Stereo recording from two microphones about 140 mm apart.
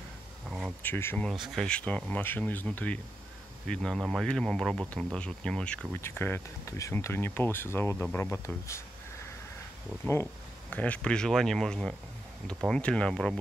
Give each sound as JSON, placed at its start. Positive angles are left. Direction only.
{"t": 0.5, "sound": "insect", "side_deg": 0}
{"t": 0.8, "sound": "speech", "side_deg": 15}
{"t": 1.2, "sound": "speech", "side_deg": 0}
{"t": 10.7, "sound": "speech", "side_deg": 10}